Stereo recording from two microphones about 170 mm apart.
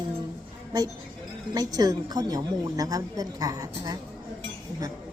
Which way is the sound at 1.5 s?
20° right (ahead or behind).